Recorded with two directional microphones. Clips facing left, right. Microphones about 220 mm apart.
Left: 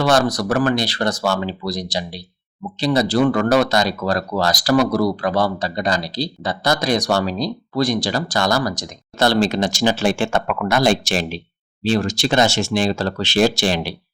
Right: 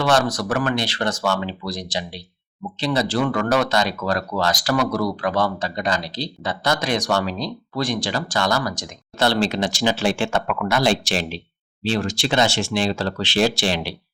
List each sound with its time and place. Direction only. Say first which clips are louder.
0.0 s speech: left 3 dB; 35° left (ahead or behind)